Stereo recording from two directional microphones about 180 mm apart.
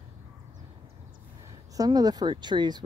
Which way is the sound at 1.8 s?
20° right (ahead or behind).